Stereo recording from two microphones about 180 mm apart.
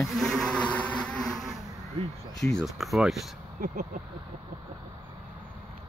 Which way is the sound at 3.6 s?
55° right (ahead or behind).